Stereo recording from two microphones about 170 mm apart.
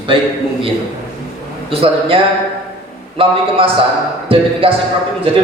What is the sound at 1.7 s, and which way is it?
A man's voice, 30° right (ahead or behind).